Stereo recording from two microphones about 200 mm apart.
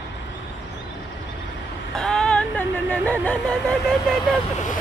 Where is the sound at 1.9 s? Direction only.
5° left (ahead or behind).